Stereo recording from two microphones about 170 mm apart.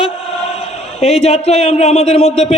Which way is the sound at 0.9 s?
35° left (ahead or behind).